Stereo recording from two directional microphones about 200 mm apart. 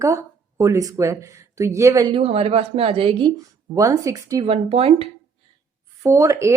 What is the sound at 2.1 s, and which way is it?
Speech, 30° right (ahead or behind).